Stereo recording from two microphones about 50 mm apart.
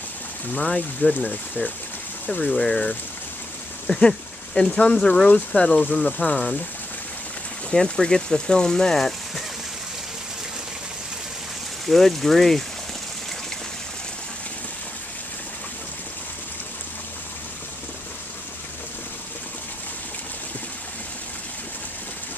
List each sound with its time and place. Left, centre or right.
0.6 s speech: left
2.4 s speech: centre
3.8 s a sound: centre
4.6 s speech: left
4.9 s speech: centre
7.7 s speech: centre
11.8 s speech: centre